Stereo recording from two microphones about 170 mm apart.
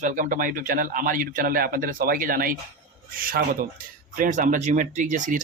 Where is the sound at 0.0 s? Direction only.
50° right (ahead or behind).